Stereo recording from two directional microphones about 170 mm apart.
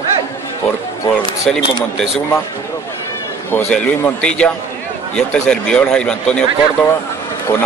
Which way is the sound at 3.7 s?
5° left (ahead or behind).